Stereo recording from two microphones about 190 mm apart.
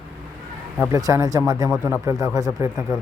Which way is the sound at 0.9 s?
20° right (ahead or behind).